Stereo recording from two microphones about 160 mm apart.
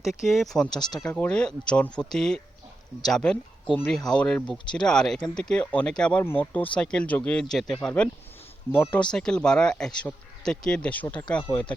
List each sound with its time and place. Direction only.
0.0 s speech: centre (ahead or behind)
0.8 s speech: 25° left (ahead or behind)
1.0 s speech: 5° left (ahead or behind)